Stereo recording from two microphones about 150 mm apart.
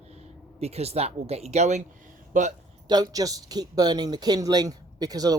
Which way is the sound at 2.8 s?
25° right (ahead or behind).